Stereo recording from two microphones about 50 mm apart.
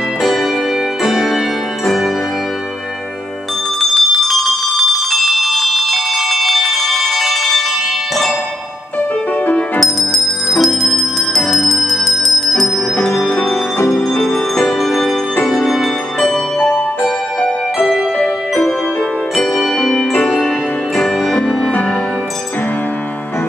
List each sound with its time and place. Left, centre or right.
0.2 s music: centre
3.9 s bell: centre
9.8 s bell: centre
13.3 s music: left
14.2 s music: centre
16.5 s music: left
19.8 s music: centre
20.2 s music: left
20.4 s music: centre